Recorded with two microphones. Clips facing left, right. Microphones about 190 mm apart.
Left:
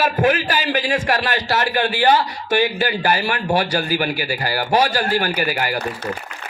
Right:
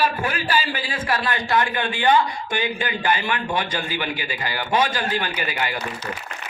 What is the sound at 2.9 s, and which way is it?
Speech, 40° left (ahead or behind).